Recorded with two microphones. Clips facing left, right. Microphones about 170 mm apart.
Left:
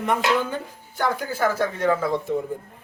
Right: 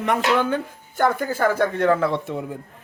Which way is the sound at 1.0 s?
50° right (ahead or behind).